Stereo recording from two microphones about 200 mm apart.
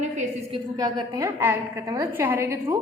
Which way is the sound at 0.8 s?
20° right (ahead or behind).